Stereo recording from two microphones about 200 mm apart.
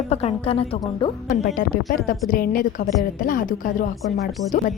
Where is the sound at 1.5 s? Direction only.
45° left (ahead or behind).